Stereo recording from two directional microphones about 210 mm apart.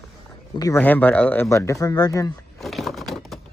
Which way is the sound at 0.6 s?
10° left (ahead or behind).